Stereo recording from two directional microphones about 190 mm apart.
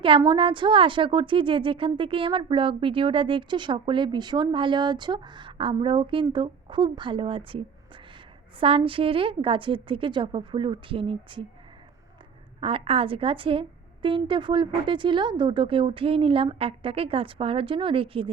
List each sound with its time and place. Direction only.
0.0 s a woman's voice: 25° right (ahead or behind)
12.5 s a woman's voice: 30° right (ahead or behind)